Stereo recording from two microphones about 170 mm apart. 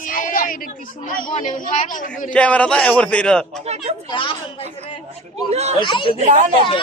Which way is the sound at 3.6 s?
40° right (ahead or behind).